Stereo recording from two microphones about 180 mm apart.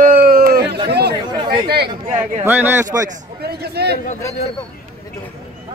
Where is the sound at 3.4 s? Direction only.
60° right (ahead or behind).